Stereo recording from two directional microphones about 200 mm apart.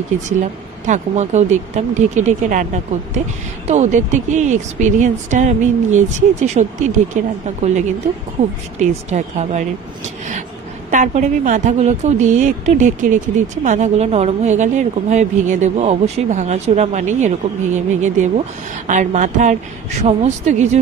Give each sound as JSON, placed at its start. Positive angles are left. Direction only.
{"t": 0.3, "sound": "a woman's voice", "side_deg": -35}